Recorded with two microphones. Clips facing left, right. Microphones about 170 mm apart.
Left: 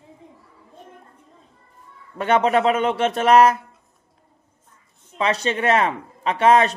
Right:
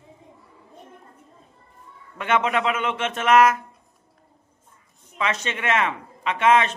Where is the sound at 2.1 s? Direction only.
35° left (ahead or behind).